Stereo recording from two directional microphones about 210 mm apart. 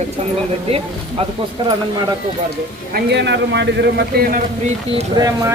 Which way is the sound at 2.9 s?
55° right (ahead or behind).